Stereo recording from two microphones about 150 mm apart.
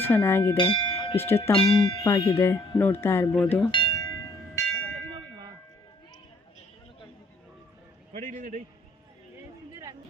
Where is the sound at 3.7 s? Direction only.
30° left (ahead or behind).